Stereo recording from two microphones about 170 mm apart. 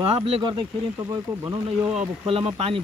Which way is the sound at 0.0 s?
35° right (ahead or behind).